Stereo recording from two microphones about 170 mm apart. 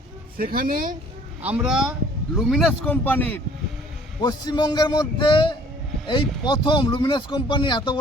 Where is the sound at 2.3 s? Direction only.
Centre (ahead or behind).